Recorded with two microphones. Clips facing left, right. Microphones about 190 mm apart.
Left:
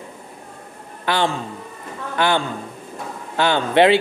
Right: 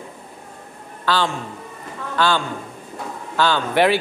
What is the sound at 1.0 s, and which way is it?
A man's voice, 20° left (ahead or behind).